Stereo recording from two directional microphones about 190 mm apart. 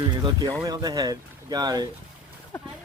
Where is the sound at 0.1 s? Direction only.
20° right (ahead or behind).